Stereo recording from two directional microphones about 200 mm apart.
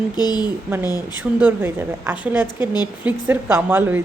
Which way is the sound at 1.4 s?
10° right (ahead or behind).